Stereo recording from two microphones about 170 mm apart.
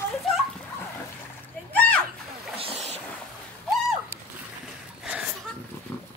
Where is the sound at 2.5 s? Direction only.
35° right (ahead or behind).